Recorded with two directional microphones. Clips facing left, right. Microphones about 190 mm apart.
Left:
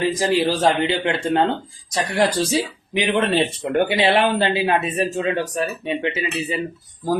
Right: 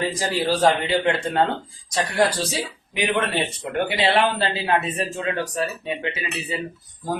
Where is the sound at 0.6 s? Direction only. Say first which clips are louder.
Even; 20° left (ahead or behind).